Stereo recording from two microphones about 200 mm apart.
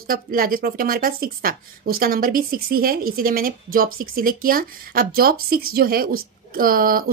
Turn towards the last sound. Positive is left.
turn(degrees=-45)  # may be behind; listen again after turning